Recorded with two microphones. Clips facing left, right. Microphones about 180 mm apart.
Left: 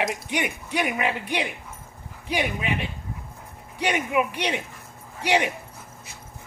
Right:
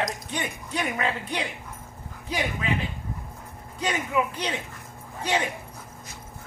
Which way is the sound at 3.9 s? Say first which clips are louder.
Left 2 dB; 15° left (ahead or behind).